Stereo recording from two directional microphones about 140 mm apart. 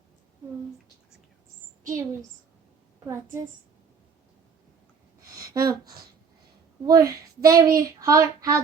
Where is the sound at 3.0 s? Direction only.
20° right (ahead or behind).